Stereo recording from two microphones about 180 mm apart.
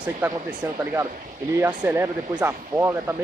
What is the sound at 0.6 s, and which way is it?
Speech, 15° right (ahead or behind).